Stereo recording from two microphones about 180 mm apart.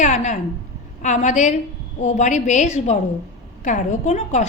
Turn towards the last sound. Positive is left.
turn(degrees=40)  # may be behind; listen again after turning